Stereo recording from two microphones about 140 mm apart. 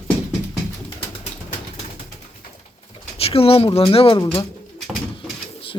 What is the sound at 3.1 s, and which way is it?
Speech, 45° left (ahead or behind).